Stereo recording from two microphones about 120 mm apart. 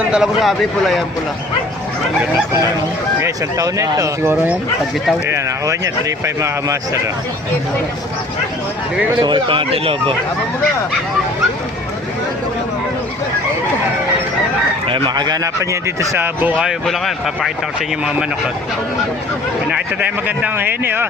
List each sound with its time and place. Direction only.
0.0 s speech: 5° right (ahead or behind)
3.2 s speech: 25° right (ahead or behind)
9.2 s speech: 40° right (ahead or behind)
14.8 s speech: 45° right (ahead or behind); by 17.5 s centre (ahead or behind)
19.7 s speech: 10° right (ahead or behind)